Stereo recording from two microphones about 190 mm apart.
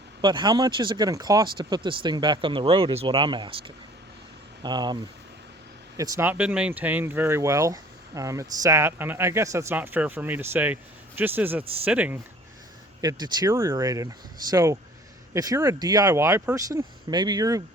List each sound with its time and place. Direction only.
0.2 s speech: 25° right (ahead or behind)
6.0 s speech: 15° right (ahead or behind)
13.0 s speech: 20° right (ahead or behind)